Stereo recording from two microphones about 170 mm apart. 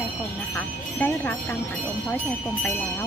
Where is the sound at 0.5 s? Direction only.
10° left (ahead or behind).